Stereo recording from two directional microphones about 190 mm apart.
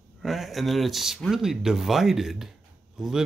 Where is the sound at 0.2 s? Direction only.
Centre (ahead or behind).